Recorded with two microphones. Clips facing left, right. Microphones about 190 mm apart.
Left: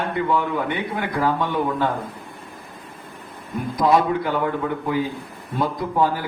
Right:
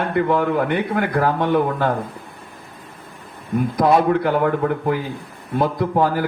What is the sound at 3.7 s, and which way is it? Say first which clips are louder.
A man's voice: right 2 dB; 55° right (ahead or behind).